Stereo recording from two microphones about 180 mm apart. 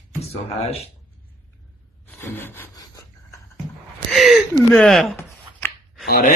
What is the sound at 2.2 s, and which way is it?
Speech, 10° left (ahead or behind).